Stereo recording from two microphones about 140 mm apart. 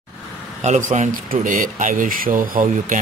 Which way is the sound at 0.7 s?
60° right (ahead or behind).